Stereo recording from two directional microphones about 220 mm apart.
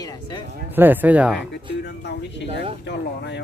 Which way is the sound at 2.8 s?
50° left (ahead or behind).